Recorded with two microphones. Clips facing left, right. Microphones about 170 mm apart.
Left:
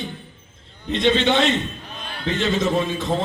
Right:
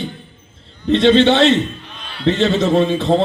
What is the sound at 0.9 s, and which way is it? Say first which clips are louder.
A man's voice: right 7 dB; 75° right (ahead or behind).